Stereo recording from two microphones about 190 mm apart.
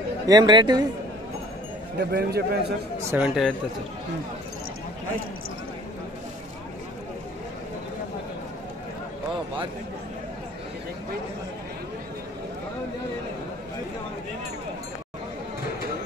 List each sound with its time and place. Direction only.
0.3 s speech: 25° right (ahead or behind)
2.0 s a man's voice: 55° right (ahead or behind)
3.1 s speech: 5° right (ahead or behind)